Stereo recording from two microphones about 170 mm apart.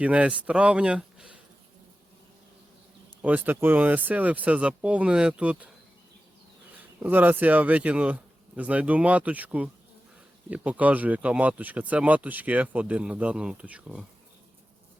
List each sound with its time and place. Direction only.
0.0 s speech: 5° right (ahead or behind)
3.2 s speech: 10° right (ahead or behind)
7.0 s speech: 10° right (ahead or behind)